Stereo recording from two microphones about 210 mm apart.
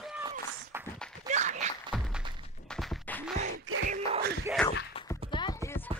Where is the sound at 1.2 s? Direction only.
35° right (ahead or behind).